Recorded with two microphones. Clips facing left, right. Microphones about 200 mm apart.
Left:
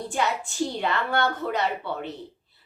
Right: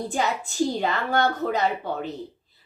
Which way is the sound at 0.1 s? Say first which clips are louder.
Right 1 dB; 40° right (ahead or behind).